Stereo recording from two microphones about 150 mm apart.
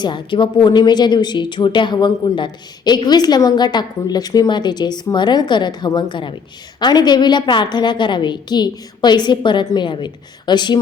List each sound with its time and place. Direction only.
0.0 s a woman's voice: 30° left (ahead or behind)